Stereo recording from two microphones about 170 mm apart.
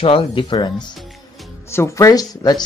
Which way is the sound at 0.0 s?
30° left (ahead or behind).